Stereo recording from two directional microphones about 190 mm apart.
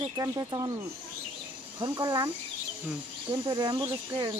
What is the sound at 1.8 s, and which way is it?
Speech, 20° right (ahead or behind).